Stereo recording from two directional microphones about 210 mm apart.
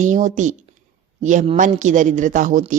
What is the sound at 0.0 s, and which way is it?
A woman's voice, 35° right (ahead or behind).